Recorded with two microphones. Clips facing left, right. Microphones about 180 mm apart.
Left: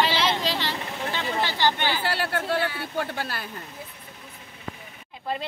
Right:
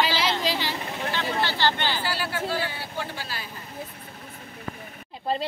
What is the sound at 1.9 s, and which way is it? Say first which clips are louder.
Speech: left 2 dB; 60° left (ahead or behind).